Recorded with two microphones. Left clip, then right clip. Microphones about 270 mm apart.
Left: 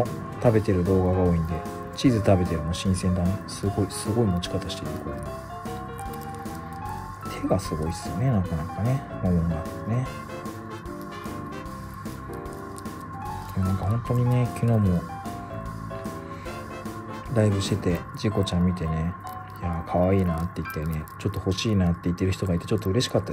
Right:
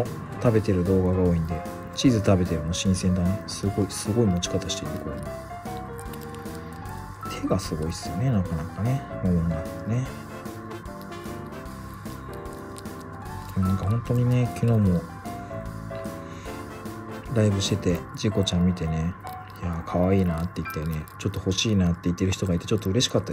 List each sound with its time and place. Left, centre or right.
0.0 s speech: centre
7.2 s speech: centre
13.6 s speech: centre
17.3 s speech: centre